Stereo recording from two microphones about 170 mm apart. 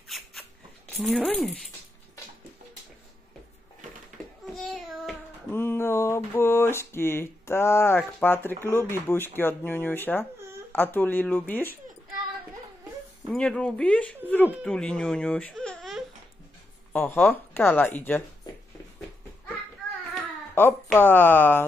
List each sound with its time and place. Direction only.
0.1 s a sound: centre (ahead or behind)
0.9 s speech: centre (ahead or behind)
4.6 s child singing: centre (ahead or behind)
5.5 s a sound: 15° left (ahead or behind)
8.7 s speech: 15° left (ahead or behind)
13.3 s speech: 5° left (ahead or behind)
20.5 s speech: 10° left (ahead or behind)